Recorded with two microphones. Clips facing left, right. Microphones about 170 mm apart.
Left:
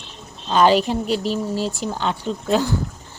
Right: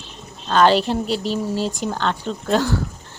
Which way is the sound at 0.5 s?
5° left (ahead or behind).